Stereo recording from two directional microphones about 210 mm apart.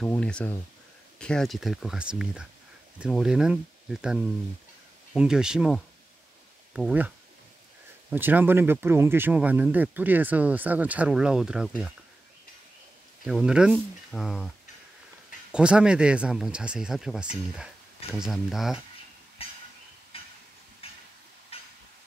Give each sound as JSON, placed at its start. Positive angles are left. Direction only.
{"t": 0.0, "sound": "speech", "side_deg": 5}
{"t": 8.1, "sound": "speech", "side_deg": -10}
{"t": 13.2, "sound": "speech", "side_deg": -5}
{"t": 15.5, "sound": "speech", "side_deg": -5}
{"t": 19.4, "sound": "a sound", "side_deg": 25}
{"t": 20.1, "sound": "train", "side_deg": 25}
{"t": 21.5, "sound": "a sound", "side_deg": 25}